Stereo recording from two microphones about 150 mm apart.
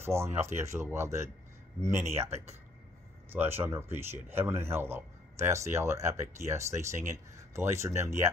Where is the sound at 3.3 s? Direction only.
15° right (ahead or behind).